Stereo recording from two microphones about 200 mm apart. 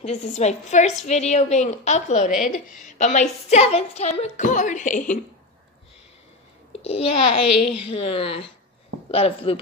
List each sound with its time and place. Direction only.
0.0 s a woman's voice: 35° left (ahead or behind)
6.8 s a woman's voice: 30° left (ahead or behind)